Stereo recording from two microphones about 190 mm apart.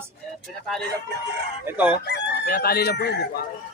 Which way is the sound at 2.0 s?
60° left (ahead or behind).